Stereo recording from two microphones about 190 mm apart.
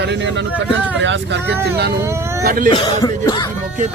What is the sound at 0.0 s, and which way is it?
Speech, 65° right (ahead or behind).